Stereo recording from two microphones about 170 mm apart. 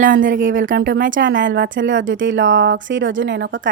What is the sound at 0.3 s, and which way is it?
Speech, 90° right.